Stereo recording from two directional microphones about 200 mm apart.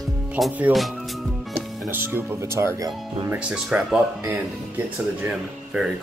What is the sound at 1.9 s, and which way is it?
Speech, 10° right (ahead or behind).